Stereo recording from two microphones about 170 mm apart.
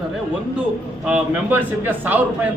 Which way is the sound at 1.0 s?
5° right (ahead or behind).